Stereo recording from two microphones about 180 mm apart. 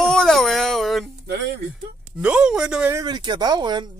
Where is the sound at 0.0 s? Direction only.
5° left (ahead or behind).